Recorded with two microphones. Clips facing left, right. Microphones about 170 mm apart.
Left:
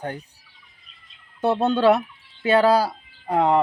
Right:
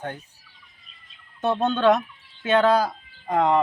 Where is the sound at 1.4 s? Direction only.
10° left (ahead or behind).